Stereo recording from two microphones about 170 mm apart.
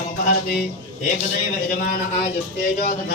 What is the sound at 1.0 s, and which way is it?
A man's voice, 55° left (ahead or behind).